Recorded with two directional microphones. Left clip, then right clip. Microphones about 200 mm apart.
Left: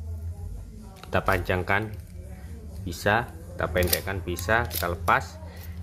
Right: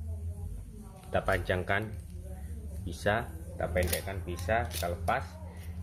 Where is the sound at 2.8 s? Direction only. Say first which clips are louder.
Left 6 dB; 15° left (ahead or behind).